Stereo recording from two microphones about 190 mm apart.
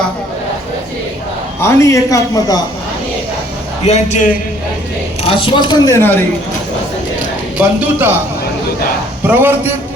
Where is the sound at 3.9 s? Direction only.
35° left (ahead or behind).